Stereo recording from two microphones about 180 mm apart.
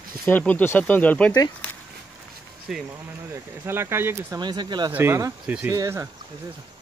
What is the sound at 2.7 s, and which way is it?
Speech, centre (ahead or behind).